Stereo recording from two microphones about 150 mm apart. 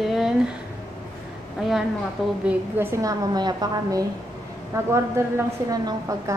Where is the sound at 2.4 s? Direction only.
15° right (ahead or behind).